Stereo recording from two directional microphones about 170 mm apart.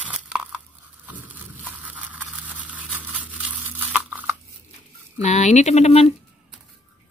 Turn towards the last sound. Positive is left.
turn(degrees=40)  # may be behind; listen again after turning